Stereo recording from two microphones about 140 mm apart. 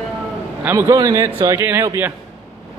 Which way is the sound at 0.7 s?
20° right (ahead or behind).